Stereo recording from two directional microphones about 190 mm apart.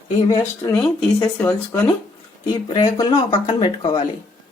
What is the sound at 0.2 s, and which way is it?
Speech, 15° left (ahead or behind).